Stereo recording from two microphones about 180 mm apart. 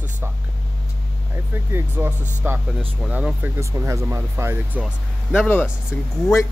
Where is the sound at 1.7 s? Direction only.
10° right (ahead or behind).